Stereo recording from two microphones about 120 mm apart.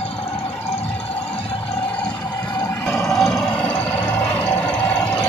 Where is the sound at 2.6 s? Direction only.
20° left (ahead or behind).